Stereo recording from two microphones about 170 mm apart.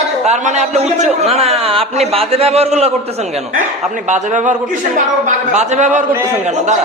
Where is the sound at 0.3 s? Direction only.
45° right (ahead or behind).